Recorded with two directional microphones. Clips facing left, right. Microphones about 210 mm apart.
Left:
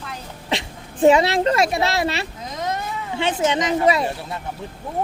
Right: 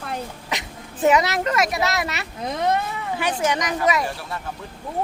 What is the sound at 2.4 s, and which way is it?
Speech, 60° right (ahead or behind).